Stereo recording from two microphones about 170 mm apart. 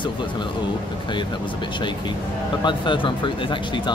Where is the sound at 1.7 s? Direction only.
25° left (ahead or behind).